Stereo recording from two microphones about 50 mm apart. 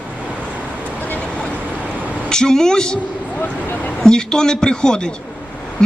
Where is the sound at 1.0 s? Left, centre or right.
Left.